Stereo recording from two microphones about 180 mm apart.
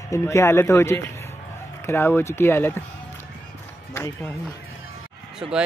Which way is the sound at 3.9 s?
10° left (ahead or behind).